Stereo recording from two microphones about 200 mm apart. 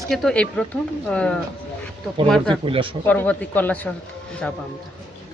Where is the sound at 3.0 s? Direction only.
10° left (ahead or behind).